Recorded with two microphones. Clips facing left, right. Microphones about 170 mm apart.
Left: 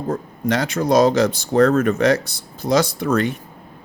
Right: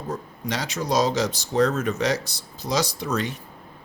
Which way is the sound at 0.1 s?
55° left (ahead or behind).